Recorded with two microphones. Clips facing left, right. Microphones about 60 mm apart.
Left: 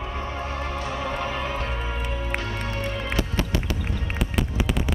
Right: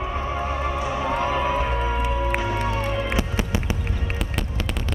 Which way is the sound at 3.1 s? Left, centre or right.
Centre.